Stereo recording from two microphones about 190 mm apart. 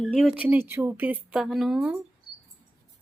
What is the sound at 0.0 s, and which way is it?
Speech, centre (ahead or behind).